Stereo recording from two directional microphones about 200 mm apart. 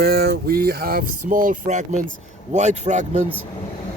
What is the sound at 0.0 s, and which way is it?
Speech, 50° right (ahead or behind).